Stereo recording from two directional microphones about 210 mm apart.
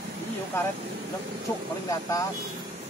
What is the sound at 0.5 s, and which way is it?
Speech, 15° left (ahead or behind).